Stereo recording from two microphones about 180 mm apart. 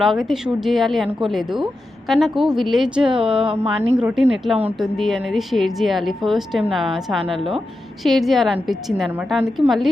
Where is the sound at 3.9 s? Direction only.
5° right (ahead or behind).